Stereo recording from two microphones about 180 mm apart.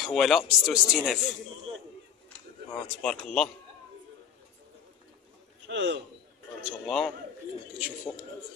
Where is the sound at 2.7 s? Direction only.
5° left (ahead or behind).